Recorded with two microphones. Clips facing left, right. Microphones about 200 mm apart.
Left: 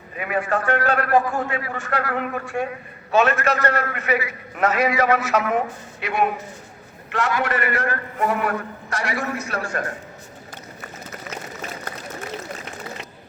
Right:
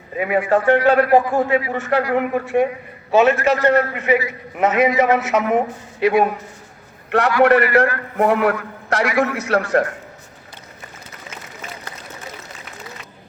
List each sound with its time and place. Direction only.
0.2 s a man's voice: 20° right (ahead or behind)
7.1 s a man's voice: 60° right (ahead or behind)
9.1 s a man's voice: 85° right